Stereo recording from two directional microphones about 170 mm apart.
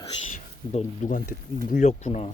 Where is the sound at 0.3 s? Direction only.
45° left (ahead or behind).